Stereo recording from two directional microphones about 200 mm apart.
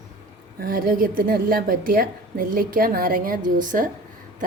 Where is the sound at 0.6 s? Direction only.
45° right (ahead or behind).